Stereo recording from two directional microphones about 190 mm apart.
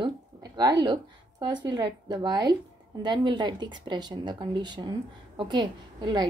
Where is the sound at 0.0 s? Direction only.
20° right (ahead or behind).